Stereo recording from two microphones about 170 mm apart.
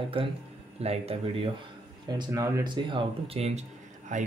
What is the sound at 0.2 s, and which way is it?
Speech, 30° right (ahead or behind).